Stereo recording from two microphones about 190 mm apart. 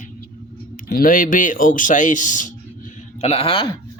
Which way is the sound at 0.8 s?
50° left (ahead or behind).